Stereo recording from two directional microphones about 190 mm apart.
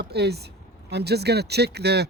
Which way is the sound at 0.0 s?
60° right (ahead or behind).